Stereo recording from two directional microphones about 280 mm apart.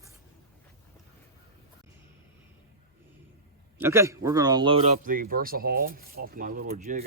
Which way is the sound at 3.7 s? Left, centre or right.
Centre.